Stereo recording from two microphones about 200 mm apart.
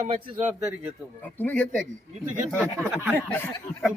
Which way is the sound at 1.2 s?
10° left (ahead or behind).